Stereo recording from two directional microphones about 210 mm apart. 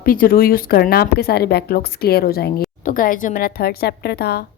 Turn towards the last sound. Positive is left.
turn(degrees=50)  # may be behind; listen again after turning